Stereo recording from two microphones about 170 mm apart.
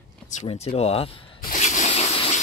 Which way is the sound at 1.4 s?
45° left (ahead or behind).